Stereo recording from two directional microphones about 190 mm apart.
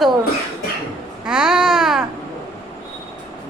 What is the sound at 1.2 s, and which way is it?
Speech, 5° right (ahead or behind).